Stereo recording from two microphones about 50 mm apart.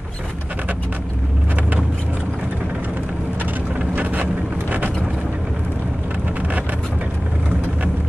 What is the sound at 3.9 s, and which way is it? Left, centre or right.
Boat, right.